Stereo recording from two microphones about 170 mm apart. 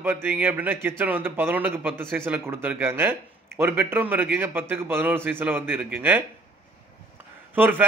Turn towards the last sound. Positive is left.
turn(degrees=-10)  # may be behind; listen again after turning